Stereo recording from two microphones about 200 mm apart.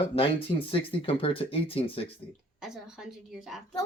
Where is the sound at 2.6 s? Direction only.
Centre (ahead or behind).